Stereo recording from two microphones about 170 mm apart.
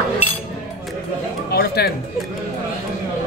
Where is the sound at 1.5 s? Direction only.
65° left (ahead or behind).